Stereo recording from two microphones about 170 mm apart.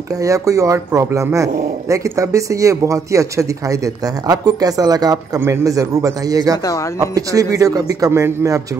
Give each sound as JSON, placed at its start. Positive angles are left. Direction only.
{"t": 0.2, "sound": "a man's voice", "side_deg": -20}